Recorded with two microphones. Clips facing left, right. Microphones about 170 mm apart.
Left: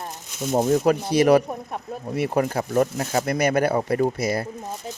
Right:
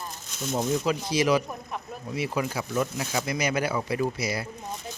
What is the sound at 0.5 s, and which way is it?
Speech, 50° left (ahead or behind).